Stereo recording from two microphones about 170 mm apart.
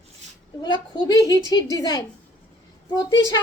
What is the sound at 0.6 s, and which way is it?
Speech, 25° left (ahead or behind).